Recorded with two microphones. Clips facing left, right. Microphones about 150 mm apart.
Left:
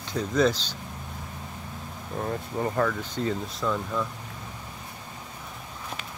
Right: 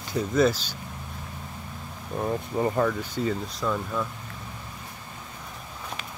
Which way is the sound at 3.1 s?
10° right (ahead or behind).